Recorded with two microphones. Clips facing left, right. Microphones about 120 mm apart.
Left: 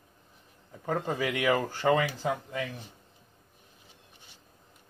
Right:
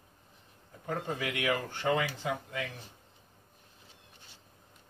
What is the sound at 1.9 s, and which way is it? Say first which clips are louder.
Speech: left 4 dB; 50° left (ahead or behind).